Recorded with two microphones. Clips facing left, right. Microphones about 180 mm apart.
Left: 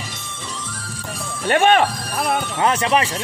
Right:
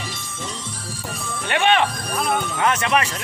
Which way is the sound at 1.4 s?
45° left (ahead or behind).